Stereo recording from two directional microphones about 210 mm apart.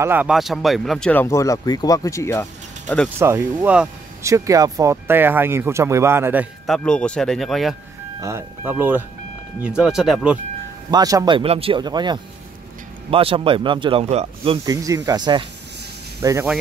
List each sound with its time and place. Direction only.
0.0 s speech: 10° right (ahead or behind); by 2.4 s 15° left (ahead or behind)
3.2 s speech: 15° right (ahead or behind)
6.6 s speech: 5° left (ahead or behind)
8.2 s speech: 15° right (ahead or behind)
10.9 s speech: 15° right (ahead or behind)